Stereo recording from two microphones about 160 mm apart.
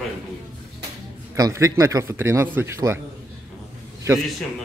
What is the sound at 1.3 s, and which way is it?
A man's voice, 20° right (ahead or behind).